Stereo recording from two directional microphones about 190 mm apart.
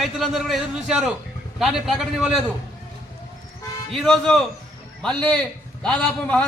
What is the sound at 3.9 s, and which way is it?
A man's voice, 5° left (ahead or behind).